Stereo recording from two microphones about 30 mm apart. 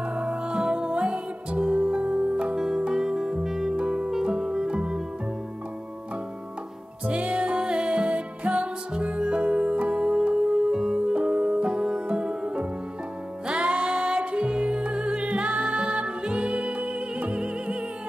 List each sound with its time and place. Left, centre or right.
0.1 s music: right
1.9 s music: right
2.5 s music: centre
3.7 s music: right
7.1 s music: right
7.5 s music: right
11.1 s music: right